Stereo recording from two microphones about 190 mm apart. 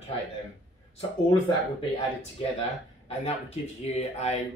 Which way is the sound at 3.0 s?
35° left (ahead or behind).